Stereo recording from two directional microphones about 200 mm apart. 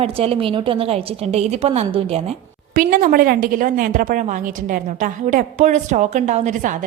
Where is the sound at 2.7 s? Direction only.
45° right (ahead or behind).